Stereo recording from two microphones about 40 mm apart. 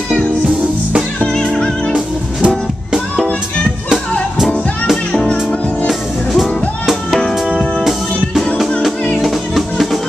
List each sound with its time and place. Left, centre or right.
1.2 s music: centre
1.9 s music: right
5.9 s music: centre
9.2 s music: centre